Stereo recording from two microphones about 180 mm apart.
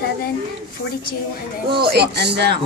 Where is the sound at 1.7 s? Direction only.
60° right (ahead or behind).